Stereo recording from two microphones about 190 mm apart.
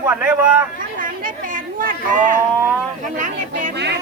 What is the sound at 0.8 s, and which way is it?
Speech, 45° right (ahead or behind).